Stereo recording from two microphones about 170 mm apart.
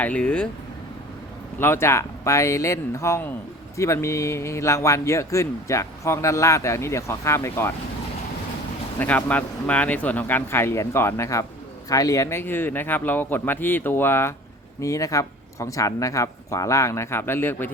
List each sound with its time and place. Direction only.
0.0 s a man's voice: 10° left (ahead or behind)
1.5 s a man's voice: 15° left (ahead or behind)
9.0 s a man's voice: 10° left (ahead or behind)